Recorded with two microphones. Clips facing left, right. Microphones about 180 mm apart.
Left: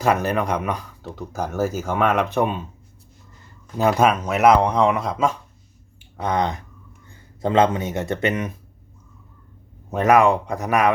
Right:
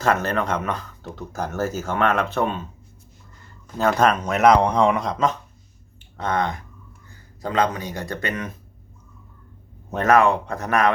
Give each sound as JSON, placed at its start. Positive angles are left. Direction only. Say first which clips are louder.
{"t": 0.0, "sound": "speech", "louder": "left 1 dB", "side_deg": 10}
{"t": 3.8, "sound": "speech", "louder": "left 1 dB", "side_deg": 10}
{"t": 9.9, "sound": "speech", "louder": "left 1 dB", "side_deg": 15}